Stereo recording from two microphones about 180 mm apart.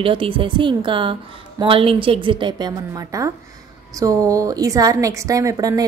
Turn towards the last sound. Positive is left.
turn(degrees=-20)  # may be behind; listen again after turning